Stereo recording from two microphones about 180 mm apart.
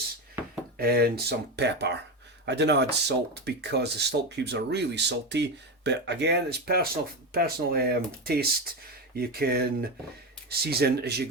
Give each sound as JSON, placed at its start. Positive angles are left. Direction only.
{"t": 0.8, "sound": "speech", "side_deg": -60}